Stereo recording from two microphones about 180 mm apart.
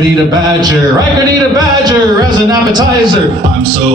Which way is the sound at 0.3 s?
20° right (ahead or behind).